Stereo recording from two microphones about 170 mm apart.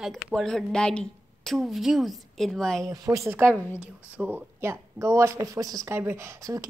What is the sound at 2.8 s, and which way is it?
Speech, 20° right (ahead or behind).